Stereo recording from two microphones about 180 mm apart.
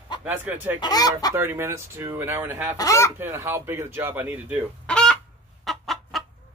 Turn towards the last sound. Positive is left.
turn(degrees=0)  # may be behind; listen again after turning